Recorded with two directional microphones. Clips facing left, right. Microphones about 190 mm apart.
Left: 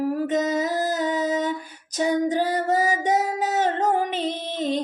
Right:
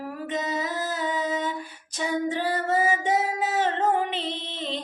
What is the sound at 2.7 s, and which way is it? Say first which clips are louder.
Female singing: even; 40° left (ahead or behind).